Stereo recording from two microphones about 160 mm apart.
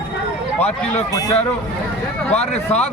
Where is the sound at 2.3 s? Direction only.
40° left (ahead or behind).